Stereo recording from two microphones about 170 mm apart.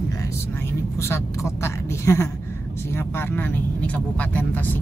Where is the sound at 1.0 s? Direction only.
15° left (ahead or behind).